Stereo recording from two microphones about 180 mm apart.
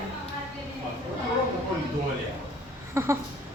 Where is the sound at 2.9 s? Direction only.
15° right (ahead or behind).